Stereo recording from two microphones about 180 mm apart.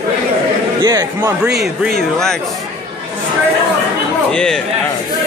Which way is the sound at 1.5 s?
60° right (ahead or behind).